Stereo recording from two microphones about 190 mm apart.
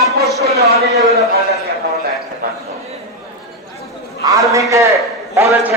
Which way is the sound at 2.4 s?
50° right (ahead or behind).